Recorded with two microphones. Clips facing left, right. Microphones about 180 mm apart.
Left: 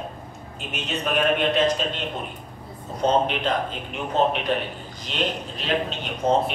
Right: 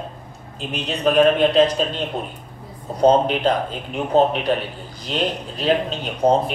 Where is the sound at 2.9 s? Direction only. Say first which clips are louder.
Right 6 dB; 35° right (ahead or behind).